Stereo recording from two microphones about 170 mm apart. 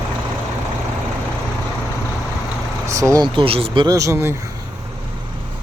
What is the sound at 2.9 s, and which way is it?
Speech, 20° right (ahead or behind).